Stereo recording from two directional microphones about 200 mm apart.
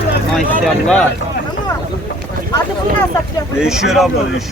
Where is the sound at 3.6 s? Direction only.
5° right (ahead or behind).